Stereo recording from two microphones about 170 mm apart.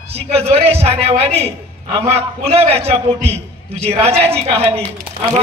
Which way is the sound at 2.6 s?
35° right (ahead or behind).